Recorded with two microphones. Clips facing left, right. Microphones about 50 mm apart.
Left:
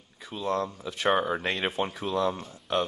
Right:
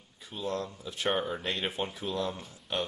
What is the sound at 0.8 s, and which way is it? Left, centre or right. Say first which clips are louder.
Speech: left 5 dB; left.